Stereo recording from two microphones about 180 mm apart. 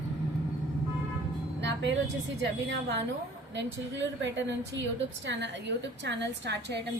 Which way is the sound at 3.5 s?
85° right.